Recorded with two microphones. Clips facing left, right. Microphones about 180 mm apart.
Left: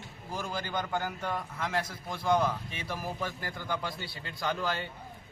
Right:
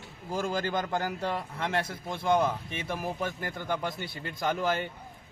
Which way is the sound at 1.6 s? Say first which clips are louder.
Right 2 dB; 60° right (ahead or behind).